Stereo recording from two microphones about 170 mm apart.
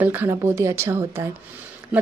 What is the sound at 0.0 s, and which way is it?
A woman's voice, 10° right (ahead or behind).